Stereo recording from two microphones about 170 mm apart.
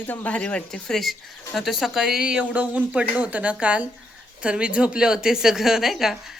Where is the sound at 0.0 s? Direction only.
10° left (ahead or behind).